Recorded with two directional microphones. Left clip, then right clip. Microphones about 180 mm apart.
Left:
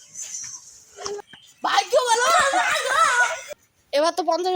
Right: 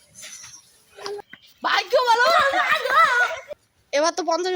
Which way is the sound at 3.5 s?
5° right (ahead or behind).